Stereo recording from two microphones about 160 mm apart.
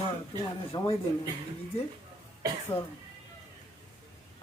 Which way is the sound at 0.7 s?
25° left (ahead or behind).